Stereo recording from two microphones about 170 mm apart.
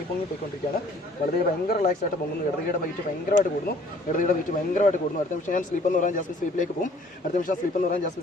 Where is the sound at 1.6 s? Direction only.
55° left (ahead or behind).